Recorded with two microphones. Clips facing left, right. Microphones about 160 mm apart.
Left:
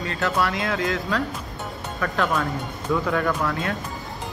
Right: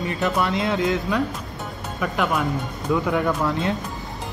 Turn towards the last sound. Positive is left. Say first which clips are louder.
# right 2 dB
turn(degrees=-25)  # may be behind; listen again after turning